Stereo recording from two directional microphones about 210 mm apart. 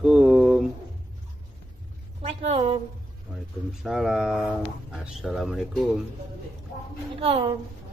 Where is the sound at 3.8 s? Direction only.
Centre (ahead or behind).